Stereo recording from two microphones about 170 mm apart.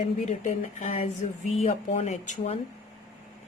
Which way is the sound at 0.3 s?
40° left (ahead or behind).